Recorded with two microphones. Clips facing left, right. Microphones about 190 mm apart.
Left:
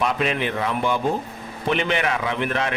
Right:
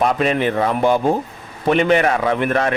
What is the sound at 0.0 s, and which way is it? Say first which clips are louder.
A man's voice: right 6 dB; 40° right (ahead or behind).